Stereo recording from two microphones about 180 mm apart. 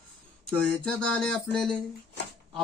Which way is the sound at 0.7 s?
5° left (ahead or behind).